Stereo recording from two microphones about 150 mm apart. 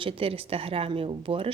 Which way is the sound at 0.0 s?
40° right (ahead or behind).